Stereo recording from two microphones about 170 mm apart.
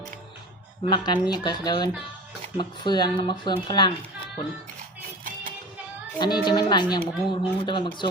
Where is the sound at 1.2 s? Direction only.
25° left (ahead or behind).